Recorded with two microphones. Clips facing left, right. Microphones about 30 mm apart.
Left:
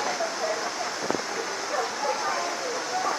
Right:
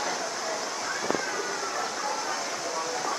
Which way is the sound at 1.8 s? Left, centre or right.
Centre.